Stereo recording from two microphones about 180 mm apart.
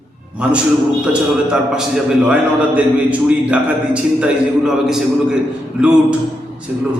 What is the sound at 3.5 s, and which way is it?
A man's voice, 5° right (ahead or behind).